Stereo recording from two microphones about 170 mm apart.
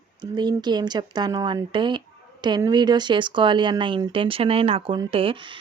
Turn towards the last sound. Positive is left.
turn(degrees=-30)  # may be behind; listen again after turning